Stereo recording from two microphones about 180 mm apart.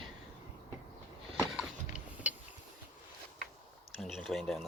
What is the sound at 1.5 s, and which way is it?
Power windows, 5° right (ahead or behind).